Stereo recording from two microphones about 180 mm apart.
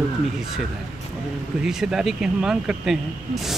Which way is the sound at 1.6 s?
5° right (ahead or behind).